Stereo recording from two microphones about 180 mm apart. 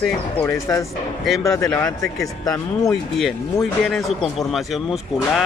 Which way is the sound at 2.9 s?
Centre (ahead or behind).